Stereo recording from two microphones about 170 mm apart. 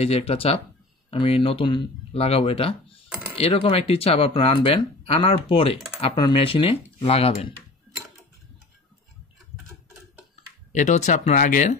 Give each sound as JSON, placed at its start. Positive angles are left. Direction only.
{"t": 0.0, "sound": "speech", "side_deg": 35}
{"t": 10.7, "sound": "speech", "side_deg": 45}